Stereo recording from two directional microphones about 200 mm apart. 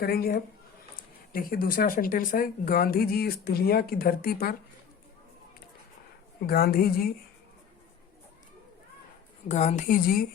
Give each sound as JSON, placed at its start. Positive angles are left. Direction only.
{"t": 0.0, "sound": "speech", "side_deg": 50}
{"t": 6.4, "sound": "speech", "side_deg": 50}
{"t": 9.5, "sound": "a woman's voice", "side_deg": 35}